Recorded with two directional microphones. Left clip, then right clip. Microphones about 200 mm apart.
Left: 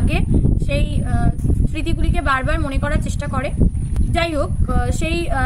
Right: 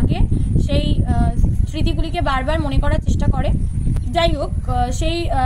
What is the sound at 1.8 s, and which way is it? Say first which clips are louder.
A woman's voice: right 4 dB; 5° left (ahead or behind).